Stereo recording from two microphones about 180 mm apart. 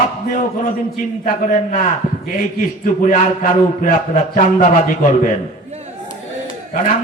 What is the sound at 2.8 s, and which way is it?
A man's voice, 45° left (ahead or behind).